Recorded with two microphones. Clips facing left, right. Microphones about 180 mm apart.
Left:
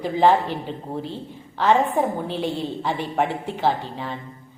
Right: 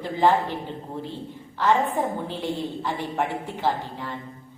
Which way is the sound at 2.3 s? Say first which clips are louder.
Left 3 dB; 20° left (ahead or behind).